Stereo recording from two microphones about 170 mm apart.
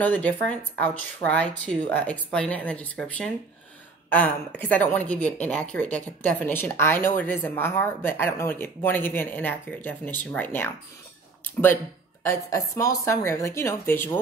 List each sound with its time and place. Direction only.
0.0 s a woman's voice: 10° left (ahead or behind)